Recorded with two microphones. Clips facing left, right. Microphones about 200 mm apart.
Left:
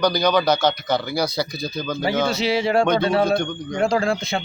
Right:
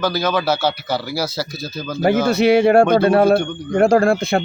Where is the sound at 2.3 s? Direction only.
55° right (ahead or behind).